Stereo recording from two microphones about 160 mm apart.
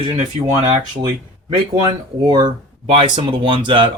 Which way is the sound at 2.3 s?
25° right (ahead or behind).